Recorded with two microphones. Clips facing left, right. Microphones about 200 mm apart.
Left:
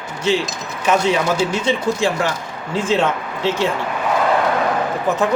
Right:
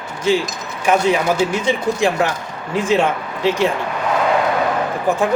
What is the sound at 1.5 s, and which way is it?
A man's voice, 15° right (ahead or behind).